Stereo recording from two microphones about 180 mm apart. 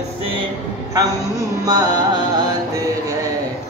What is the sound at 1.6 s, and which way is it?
Carnatic music, 20° right (ahead or behind).